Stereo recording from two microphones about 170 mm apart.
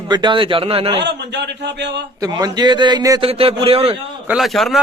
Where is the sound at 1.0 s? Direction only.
85° right.